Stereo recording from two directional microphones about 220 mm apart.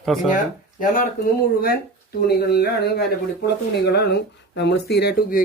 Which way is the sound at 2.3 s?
50° left (ahead or behind).